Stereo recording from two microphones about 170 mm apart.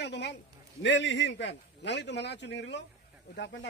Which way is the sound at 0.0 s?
80° left.